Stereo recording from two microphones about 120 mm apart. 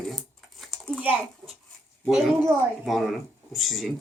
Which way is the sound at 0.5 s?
Centre (ahead or behind).